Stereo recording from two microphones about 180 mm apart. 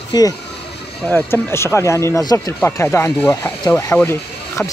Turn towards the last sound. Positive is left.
turn(degrees=15)  # may be behind; listen again after turning